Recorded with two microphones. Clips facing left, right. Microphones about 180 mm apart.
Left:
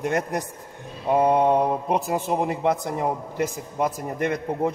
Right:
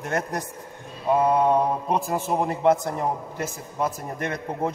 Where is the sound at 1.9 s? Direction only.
15° left (ahead or behind).